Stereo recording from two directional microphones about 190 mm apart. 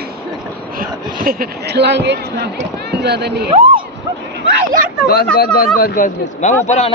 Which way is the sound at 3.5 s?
30° right (ahead or behind).